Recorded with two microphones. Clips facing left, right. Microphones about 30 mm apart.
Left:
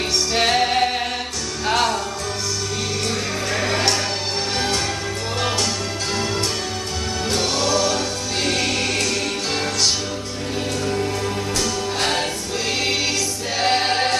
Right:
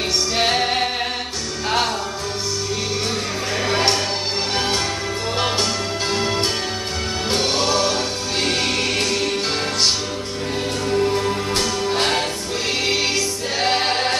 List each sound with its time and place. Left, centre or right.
0.3 s music: centre
6.1 s music: right
10.9 s music: centre